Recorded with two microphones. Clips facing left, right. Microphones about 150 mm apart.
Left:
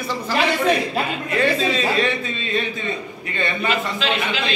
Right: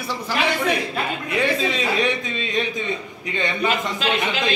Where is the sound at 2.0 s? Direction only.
15° right (ahead or behind).